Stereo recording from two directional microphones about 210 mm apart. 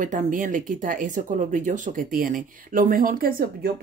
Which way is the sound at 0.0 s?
40° right (ahead or behind).